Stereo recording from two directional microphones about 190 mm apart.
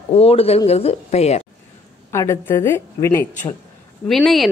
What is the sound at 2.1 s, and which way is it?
A woman's voice, 15° left (ahead or behind).